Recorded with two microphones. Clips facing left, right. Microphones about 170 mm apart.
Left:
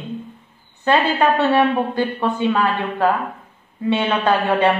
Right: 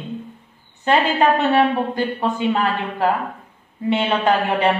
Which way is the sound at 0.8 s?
20° right (ahead or behind).